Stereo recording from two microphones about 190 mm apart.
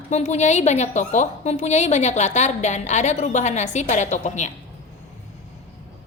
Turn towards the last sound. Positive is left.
turn(degrees=40)  # may be behind; listen again after turning